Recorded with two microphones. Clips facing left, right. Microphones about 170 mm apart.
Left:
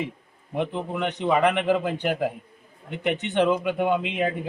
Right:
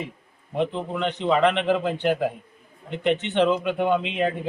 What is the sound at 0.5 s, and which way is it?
Speech, 15° left (ahead or behind).